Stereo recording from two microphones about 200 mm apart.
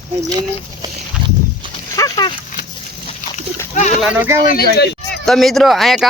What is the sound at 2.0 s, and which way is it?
Speech, 20° left (ahead or behind).